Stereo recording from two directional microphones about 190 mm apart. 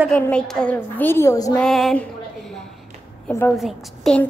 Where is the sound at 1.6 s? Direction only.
Centre (ahead or behind).